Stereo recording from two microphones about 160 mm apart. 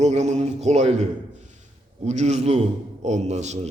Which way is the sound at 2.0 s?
45° right (ahead or behind).